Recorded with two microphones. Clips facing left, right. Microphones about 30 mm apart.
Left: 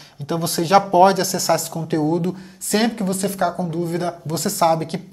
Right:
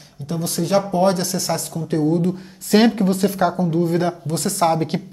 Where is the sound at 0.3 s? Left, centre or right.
Left.